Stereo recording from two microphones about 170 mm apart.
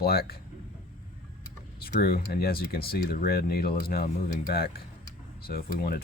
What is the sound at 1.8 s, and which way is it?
Speech, 60° left (ahead or behind).